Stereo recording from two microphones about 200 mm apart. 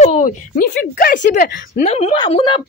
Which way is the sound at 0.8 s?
45° left (ahead or behind).